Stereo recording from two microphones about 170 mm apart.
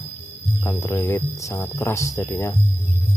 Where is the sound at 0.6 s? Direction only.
15° left (ahead or behind).